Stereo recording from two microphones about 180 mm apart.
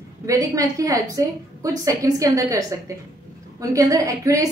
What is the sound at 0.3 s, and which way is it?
A woman's voice, 20° right (ahead or behind).